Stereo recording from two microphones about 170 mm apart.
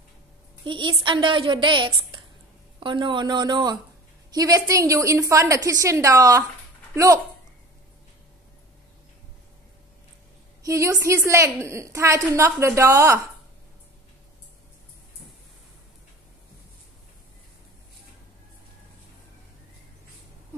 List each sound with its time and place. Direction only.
0.7 s a woman's voice: 30° right (ahead or behind)
10.6 s a woman's voice: 20° right (ahead or behind)